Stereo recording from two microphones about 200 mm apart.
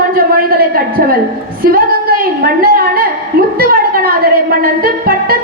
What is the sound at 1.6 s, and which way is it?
A woman's voice, 45° right (ahead or behind).